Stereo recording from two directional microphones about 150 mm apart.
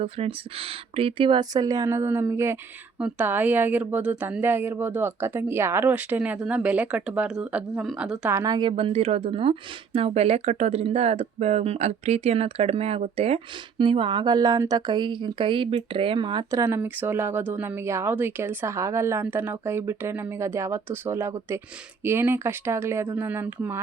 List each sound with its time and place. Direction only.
0.0 s speech: 40° right (ahead or behind); by 8.3 s 5° right (ahead or behind)
8.3 s speech: 15° right (ahead or behind)
8.5 s speech: 35° right (ahead or behind); by 23.8 s 15° right (ahead or behind)